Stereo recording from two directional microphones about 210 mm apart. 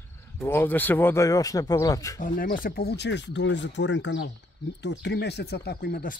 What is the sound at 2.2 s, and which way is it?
Speech, 40° left (ahead or behind).